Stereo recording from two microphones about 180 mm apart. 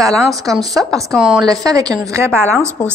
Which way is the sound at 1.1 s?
Centre (ahead or behind).